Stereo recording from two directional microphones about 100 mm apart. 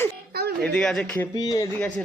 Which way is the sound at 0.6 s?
10° left (ahead or behind).